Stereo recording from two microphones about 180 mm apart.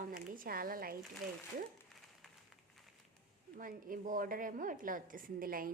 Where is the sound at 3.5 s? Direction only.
50° right (ahead or behind).